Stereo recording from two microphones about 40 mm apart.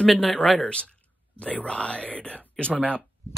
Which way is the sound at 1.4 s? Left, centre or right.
Left.